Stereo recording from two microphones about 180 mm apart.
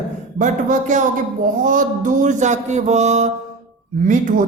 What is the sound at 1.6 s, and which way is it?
A woman's voice, 45° right (ahead or behind).